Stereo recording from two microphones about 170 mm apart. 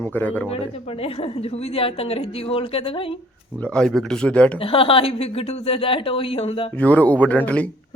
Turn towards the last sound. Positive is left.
turn(degrees=10)  # may be behind; listen again after turning